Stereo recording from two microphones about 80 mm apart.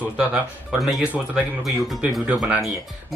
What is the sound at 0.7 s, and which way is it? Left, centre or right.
Speech, centre.